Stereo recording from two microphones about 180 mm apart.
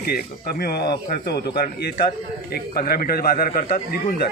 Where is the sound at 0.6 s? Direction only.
60° left (ahead or behind).